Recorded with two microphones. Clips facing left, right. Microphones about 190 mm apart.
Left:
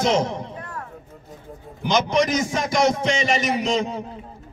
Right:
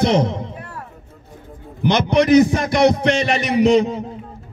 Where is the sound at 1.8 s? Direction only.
60° right (ahead or behind).